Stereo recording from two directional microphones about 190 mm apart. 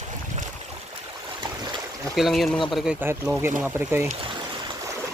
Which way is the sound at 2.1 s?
Centre (ahead or behind).